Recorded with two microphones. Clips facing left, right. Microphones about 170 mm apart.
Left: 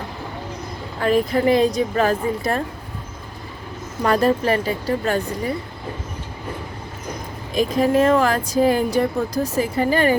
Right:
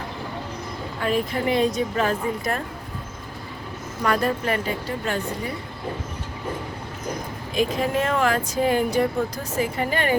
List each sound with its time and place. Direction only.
1.0 s speech: 40° left (ahead or behind)
4.0 s speech: 30° left (ahead or behind)
7.5 s speech: 40° left (ahead or behind)